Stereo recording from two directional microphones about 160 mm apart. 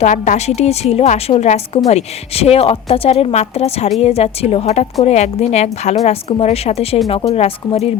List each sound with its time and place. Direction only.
0.0 s a woman's voice: 45° left (ahead or behind)